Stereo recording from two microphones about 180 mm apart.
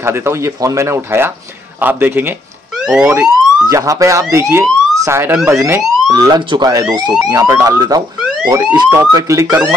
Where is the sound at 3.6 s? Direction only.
20° right (ahead or behind).